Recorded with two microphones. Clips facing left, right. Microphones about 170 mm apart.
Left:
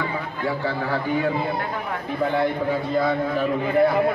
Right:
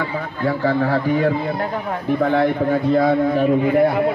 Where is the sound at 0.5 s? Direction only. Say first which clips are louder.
Right 7 dB; 45° right (ahead or behind).